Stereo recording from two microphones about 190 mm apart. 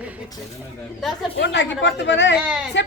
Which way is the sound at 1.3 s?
65° left (ahead or behind).